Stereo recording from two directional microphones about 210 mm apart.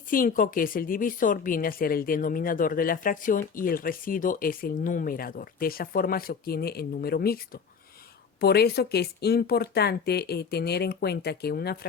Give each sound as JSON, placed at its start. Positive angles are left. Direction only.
{"t": 0.1, "sound": "a woman's voice", "side_deg": 40}